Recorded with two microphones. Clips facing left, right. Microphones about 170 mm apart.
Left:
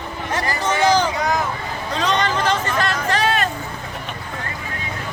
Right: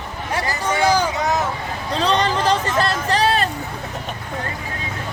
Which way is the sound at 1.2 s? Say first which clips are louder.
Even; 25° right (ahead or behind).